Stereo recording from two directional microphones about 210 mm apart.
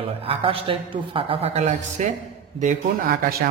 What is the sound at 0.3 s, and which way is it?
A man's voice, 25° right (ahead or behind).